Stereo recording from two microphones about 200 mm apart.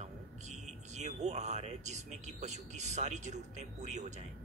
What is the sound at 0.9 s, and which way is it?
Speech, 35° right (ahead or behind).